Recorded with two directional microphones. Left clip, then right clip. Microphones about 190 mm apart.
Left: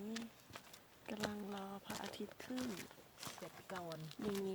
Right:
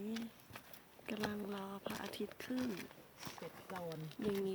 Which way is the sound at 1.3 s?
5° left (ahead or behind).